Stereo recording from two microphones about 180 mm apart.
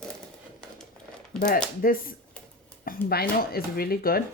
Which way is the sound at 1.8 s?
50° left (ahead or behind).